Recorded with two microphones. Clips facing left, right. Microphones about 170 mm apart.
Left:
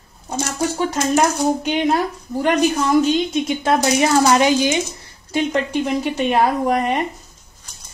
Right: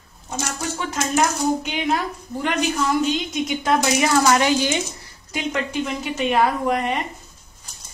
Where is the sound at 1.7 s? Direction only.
40° left (ahead or behind).